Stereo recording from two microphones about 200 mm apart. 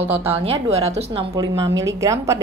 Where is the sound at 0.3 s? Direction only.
30° right (ahead or behind).